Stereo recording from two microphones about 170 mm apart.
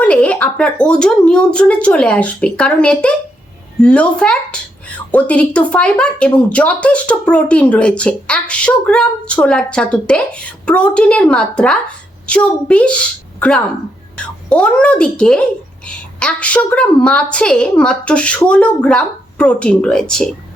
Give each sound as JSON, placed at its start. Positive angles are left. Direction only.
{"t": 0.0, "sound": "a woman's voice", "side_deg": 5}
{"t": 14.2, "sound": "a woman's voice", "side_deg": 5}